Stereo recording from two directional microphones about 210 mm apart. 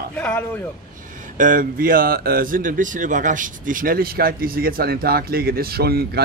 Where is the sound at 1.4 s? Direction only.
40° right (ahead or behind).